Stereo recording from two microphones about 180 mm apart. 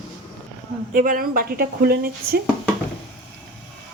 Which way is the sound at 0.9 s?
50° right (ahead or behind).